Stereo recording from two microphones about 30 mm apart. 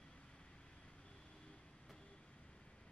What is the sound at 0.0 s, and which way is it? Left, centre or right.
Vehicle, left.